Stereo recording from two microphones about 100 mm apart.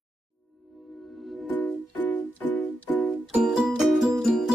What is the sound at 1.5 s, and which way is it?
Music, 15° left (ahead or behind).